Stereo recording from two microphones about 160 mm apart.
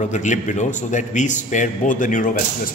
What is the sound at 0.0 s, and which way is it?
A man's voice, 50° left (ahead or behind).